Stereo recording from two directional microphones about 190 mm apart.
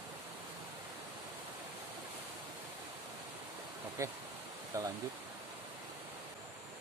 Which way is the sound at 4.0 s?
15° right (ahead or behind).